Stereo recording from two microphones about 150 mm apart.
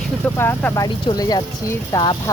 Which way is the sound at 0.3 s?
15° left (ahead or behind).